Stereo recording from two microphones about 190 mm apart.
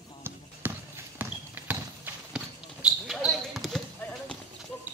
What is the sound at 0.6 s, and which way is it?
Basketball bounce, 10° right (ahead or behind).